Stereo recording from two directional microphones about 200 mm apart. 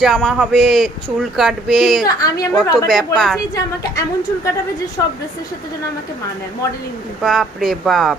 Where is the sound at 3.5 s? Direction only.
15° left (ahead or behind).